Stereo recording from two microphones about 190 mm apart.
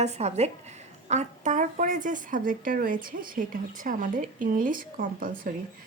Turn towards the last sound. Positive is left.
turn(degrees=-45)  # may be behind; listen again after turning